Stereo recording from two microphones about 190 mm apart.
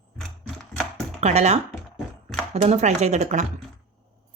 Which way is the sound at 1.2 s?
35° right (ahead or behind).